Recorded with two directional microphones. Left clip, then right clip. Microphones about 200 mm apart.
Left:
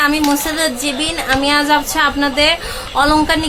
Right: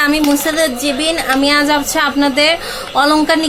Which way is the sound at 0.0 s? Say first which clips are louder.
Right 1 dB; 15° right (ahead or behind).